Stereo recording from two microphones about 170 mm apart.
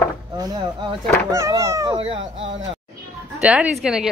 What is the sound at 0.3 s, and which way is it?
Speech, 25° right (ahead or behind).